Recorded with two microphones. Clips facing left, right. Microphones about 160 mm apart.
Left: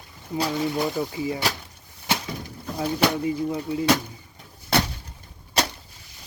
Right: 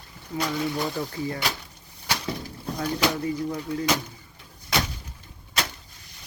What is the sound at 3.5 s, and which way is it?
Speech, 20° left (ahead or behind).